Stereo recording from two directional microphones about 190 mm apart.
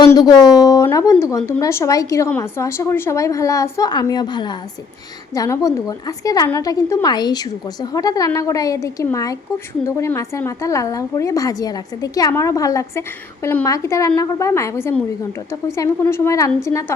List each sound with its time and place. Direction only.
0.0 s a woman's voice: 20° left (ahead or behind)